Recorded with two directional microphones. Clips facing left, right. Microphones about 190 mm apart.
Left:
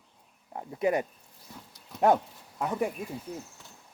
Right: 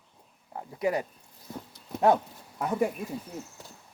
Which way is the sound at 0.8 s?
20° left (ahead or behind).